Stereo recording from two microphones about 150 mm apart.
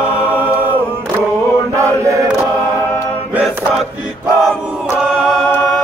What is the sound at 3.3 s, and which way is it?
Chant, 5° right (ahead or behind).